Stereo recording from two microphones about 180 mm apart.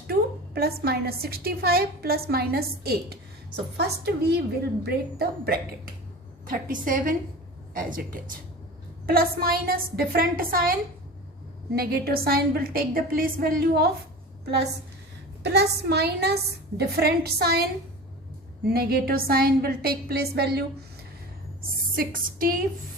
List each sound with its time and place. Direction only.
0.1 s a woman's voice: 60° right (ahead or behind)
15.4 s a woman's voice: 65° right (ahead or behind)
21.9 s a woman's voice: 50° right (ahead or behind)